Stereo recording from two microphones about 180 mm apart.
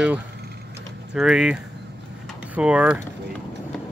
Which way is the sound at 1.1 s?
5° right (ahead or behind).